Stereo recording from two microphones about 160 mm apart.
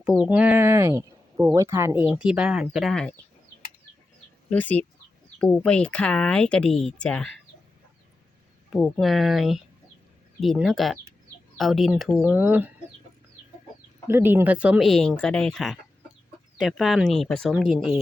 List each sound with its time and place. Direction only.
0.3 s speech: 10° right (ahead or behind)
4.4 s speech: 10° left (ahead or behind)
8.7 s speech: centre (ahead or behind)
14.1 s speech: 15° right (ahead or behind)